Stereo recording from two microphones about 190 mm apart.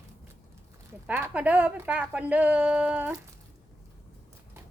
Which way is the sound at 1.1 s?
10° right (ahead or behind).